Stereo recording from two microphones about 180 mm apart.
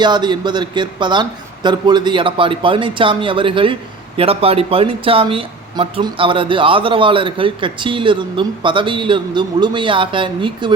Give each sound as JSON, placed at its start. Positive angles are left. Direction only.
{"t": 0.0, "sound": "speech", "side_deg": -25}